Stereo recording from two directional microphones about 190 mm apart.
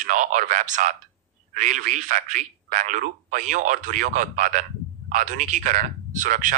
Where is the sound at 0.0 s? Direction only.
40° right (ahead or behind).